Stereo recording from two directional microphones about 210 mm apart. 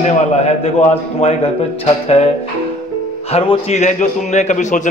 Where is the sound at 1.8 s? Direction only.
30° left (ahead or behind).